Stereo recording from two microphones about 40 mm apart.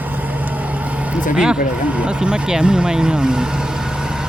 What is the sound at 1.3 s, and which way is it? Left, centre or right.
Speech, centre.